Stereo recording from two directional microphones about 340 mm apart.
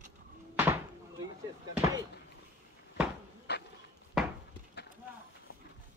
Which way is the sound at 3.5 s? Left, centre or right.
Left.